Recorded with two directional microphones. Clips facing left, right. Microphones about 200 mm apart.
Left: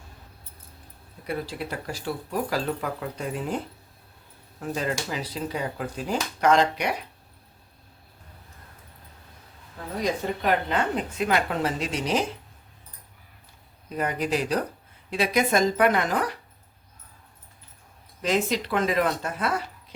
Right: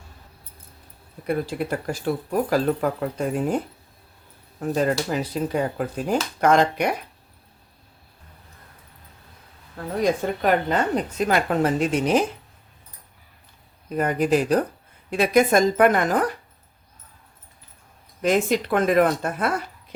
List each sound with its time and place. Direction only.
1.3 s a woman's voice: 50° right (ahead or behind)
4.6 s a woman's voice: 50° right (ahead or behind)
10.0 s a woman's voice: 45° right (ahead or behind)
13.9 s a woman's voice: 50° right (ahead or behind)
18.2 s a woman's voice: 55° right (ahead or behind)